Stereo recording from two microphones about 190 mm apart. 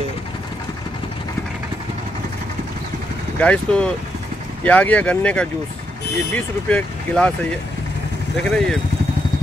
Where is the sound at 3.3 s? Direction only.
5° left (ahead or behind).